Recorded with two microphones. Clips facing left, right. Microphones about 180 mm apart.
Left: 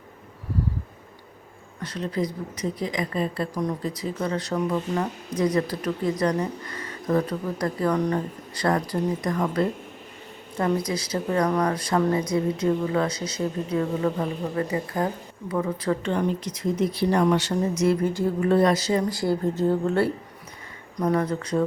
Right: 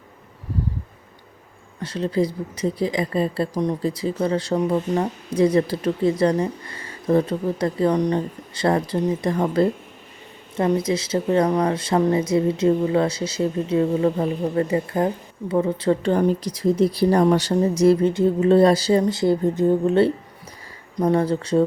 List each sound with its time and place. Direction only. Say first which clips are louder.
1.8 s a woman's voice: right 5 dB; 30° right (ahead or behind)
21.0 s a woman's voice: right 4 dB; 30° right (ahead or behind)